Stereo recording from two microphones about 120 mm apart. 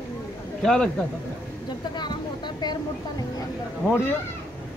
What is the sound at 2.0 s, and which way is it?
Vehicle, 40° left (ahead or behind).